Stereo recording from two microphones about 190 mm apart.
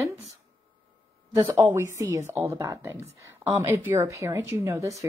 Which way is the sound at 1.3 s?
15° right (ahead or behind).